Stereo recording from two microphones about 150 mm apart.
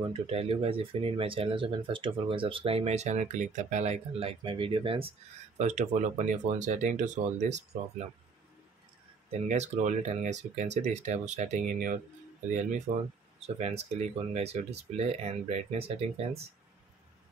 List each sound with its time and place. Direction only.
0.1 s speech: 40° right (ahead or behind)
5.6 s speech: 50° right (ahead or behind)
9.3 s speech: 50° right (ahead or behind)
12.9 s speech: 50° right (ahead or behind)